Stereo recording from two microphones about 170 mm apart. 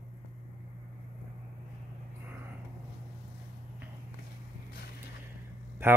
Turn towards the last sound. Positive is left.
turn(degrees=-15)  # may be behind; listen again after turning